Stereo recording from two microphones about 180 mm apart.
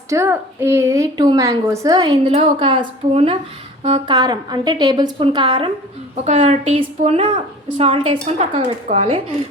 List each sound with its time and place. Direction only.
0.1 s a woman's voice: 15° right (ahead or behind)
6.2 s a woman's voice: 40° right (ahead or behind)